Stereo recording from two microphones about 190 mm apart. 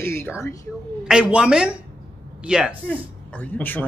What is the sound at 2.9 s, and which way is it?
Speech, 5° left (ahead or behind).